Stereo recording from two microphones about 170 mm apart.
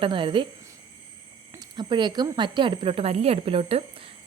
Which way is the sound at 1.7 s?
25° right (ahead or behind).